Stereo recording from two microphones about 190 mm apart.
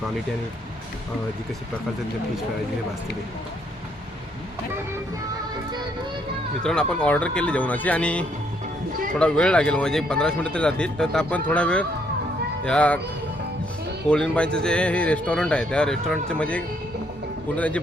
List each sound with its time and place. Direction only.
6.6 s speech: 5° left (ahead or behind)
14.1 s speech: 5° left (ahead or behind)